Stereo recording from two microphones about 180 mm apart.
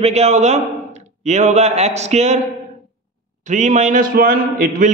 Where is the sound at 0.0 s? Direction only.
35° right (ahead or behind).